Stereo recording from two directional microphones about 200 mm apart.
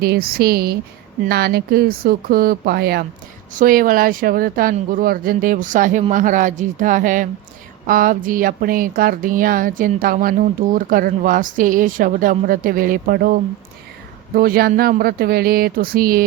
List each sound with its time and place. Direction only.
0.0 s speech: 50° right (ahead or behind)